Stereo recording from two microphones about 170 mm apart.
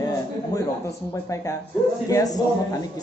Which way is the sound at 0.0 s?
20° left (ahead or behind).